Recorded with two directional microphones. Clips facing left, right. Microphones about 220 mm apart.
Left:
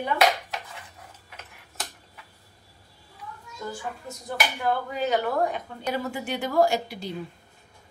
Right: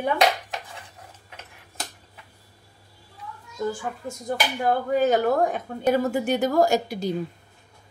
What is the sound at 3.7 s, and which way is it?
Speech, 45° right (ahead or behind).